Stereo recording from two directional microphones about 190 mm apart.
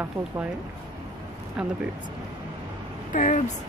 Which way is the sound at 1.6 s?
5° right (ahead or behind).